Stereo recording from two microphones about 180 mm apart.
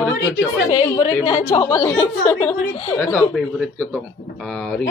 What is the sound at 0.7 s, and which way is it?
A woman's voice, 25° left (ahead or behind).